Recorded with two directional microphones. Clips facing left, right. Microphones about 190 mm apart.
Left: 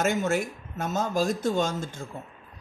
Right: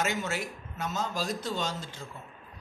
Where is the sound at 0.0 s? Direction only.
50° left (ahead or behind).